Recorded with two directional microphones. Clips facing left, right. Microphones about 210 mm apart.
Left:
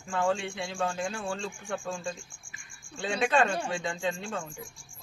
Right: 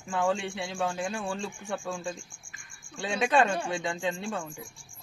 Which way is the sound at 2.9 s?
15° right (ahead or behind).